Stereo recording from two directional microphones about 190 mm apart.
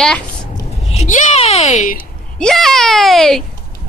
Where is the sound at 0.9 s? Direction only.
35° left (ahead or behind).